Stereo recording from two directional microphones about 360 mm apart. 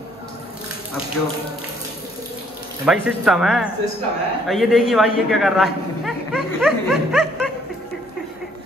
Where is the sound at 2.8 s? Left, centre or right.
Centre.